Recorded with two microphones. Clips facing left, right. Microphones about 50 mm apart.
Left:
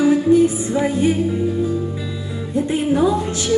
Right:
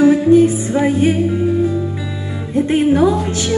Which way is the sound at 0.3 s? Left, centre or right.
Right.